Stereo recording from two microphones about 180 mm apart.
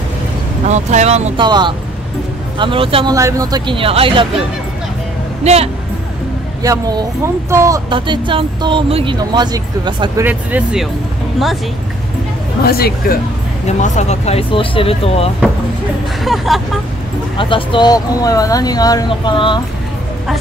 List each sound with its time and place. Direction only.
0.7 s speech: 40° right (ahead or behind)
1.4 s speech: 25° right (ahead or behind)
3.2 s speech: 20° right (ahead or behind)
5.4 s speech: 35° right (ahead or behind)
6.6 s speech: 20° right (ahead or behind)
10.2 s speech: 5° right (ahead or behind)
12.6 s speech: 60° left (ahead or behind)
13.7 s speech: 40° left (ahead or behind)
16.3 s speech: centre (ahead or behind)
17.4 s speech: 30° left (ahead or behind)